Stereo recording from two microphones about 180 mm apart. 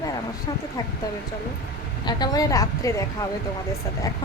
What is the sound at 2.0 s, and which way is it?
Speech, 25° left (ahead or behind).